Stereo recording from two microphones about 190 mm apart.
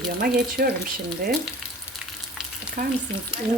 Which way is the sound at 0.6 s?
55° right (ahead or behind).